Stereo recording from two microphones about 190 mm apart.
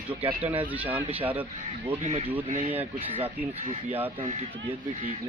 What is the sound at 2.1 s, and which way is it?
Speech, 35° right (ahead or behind).